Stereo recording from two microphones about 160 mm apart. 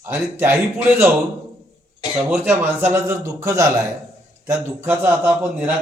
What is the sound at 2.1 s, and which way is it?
A man's voice, 10° right (ahead or behind).